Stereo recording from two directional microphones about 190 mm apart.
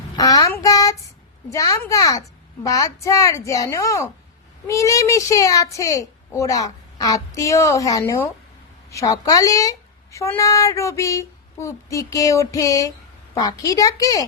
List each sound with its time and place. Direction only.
0.2 s child singing: 20° left (ahead or behind)
1.5 s a woman's voice: 15° left (ahead or behind)